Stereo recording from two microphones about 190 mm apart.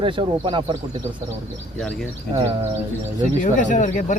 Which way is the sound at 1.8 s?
Centre (ahead or behind).